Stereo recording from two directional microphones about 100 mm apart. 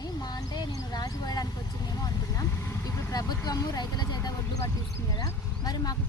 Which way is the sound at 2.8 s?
35° left (ahead or behind).